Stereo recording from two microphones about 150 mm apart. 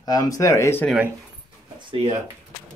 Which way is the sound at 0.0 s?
25° left (ahead or behind).